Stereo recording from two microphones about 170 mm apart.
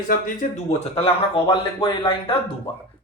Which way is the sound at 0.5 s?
35° left (ahead or behind).